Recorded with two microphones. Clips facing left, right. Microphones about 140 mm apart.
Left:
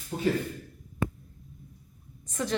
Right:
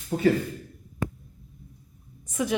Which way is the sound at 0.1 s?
90° right.